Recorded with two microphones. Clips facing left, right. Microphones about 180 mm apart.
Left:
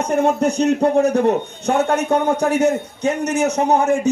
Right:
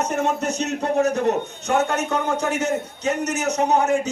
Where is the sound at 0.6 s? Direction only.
55° left (ahead or behind).